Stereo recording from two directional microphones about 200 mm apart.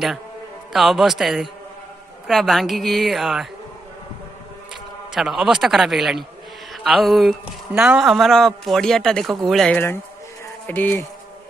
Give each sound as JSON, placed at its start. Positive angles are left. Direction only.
{"t": 0.7, "sound": "speech", "side_deg": 0}
{"t": 5.1, "sound": "speech", "side_deg": 0}